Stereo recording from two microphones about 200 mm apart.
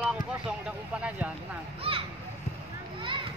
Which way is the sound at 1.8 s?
30° right (ahead or behind).